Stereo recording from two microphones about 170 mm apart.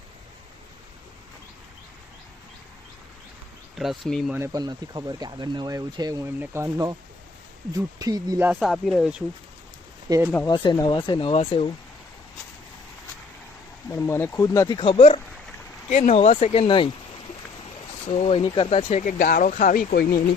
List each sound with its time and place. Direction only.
3.8 s speech: centre (ahead or behind)
4.4 s speech: 20° right (ahead or behind)
8.4 s speech: 5° right (ahead or behind)
10.1 s speech: 15° right (ahead or behind)
10.4 s speech: 25° left (ahead or behind)
13.8 s speech: 15° left (ahead or behind)
14.8 s speech: 35° left (ahead or behind)
18.0 s speech: 35° left (ahead or behind)
18.9 s speech: 50° left (ahead or behind)